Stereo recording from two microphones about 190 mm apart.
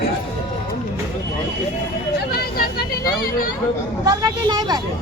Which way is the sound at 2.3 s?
55° left (ahead or behind).